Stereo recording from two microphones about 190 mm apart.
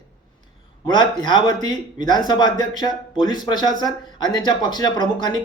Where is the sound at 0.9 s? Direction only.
25° left (ahead or behind).